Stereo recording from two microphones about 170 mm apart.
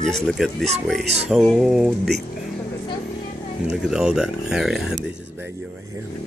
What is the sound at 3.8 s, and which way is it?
Speech, 5° right (ahead or behind).